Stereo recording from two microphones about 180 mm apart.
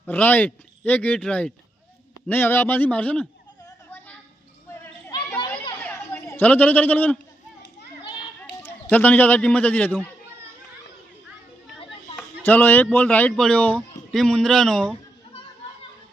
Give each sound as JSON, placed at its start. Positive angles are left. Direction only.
{"t": 0.0, "sound": "speech", "side_deg": 10}
{"t": 5.3, "sound": "children playing", "side_deg": 15}
{"t": 5.8, "sound": "a sound", "side_deg": 10}
{"t": 8.0, "sound": "children playing", "side_deg": 25}
{"t": 8.6, "sound": "speech", "side_deg": 10}
{"t": 12.1, "sound": "a man's voice", "side_deg": 10}